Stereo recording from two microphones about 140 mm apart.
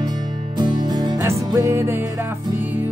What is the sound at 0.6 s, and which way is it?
Music, 30° right (ahead or behind).